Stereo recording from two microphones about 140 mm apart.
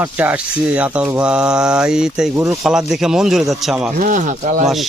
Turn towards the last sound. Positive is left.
turn(degrees=-65)  # may be behind; listen again after turning